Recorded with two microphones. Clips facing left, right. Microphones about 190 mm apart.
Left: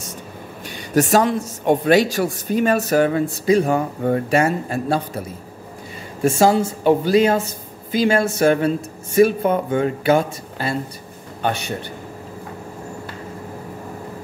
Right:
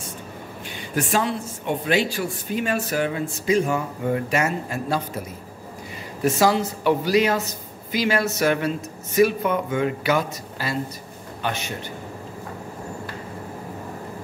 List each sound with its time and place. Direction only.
0.9 s speech: 45° left (ahead or behind)
6.2 s speech: 30° left (ahead or behind)